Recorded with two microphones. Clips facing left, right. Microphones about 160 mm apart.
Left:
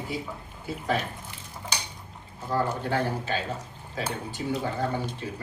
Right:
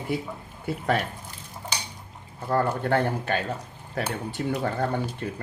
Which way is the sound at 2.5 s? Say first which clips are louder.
Right 4 dB; 60° right (ahead or behind).